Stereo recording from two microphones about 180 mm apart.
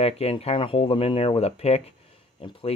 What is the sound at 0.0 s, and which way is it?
Speech, 35° left (ahead or behind).